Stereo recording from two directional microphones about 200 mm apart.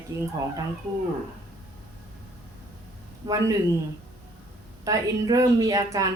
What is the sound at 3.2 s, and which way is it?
Speech, 15° right (ahead or behind).